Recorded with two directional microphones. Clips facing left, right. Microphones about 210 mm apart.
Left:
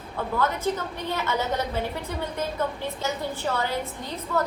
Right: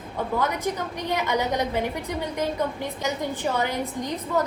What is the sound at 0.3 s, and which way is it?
A woman's voice, 15° right (ahead or behind).